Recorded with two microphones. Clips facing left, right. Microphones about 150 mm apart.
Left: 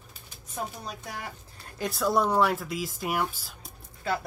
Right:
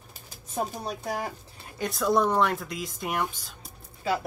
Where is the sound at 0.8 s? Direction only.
35° right (ahead or behind).